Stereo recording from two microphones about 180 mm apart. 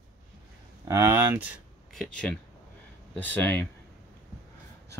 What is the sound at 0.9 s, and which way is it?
Speech, 15° right (ahead or behind).